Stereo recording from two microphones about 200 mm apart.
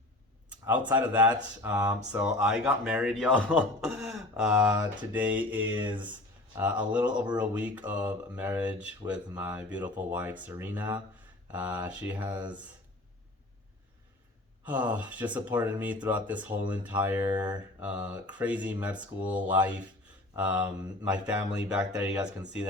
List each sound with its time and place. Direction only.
0.5 s a sound: 10° right (ahead or behind)
0.9 s speech: 10° right (ahead or behind)
5.8 s speech: 25° right (ahead or behind)
6.6 s speech: 5° right (ahead or behind)
14.7 s speech: 10° right (ahead or behind)